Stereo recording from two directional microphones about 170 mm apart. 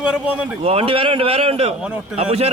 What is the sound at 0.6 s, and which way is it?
Speech, 35° right (ahead or behind).